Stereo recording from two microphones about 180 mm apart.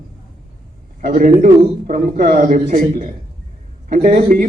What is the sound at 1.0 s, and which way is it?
A man's voice, 45° right (ahead or behind).